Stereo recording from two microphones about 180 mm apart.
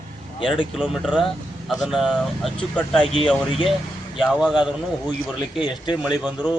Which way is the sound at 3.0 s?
30° left (ahead or behind).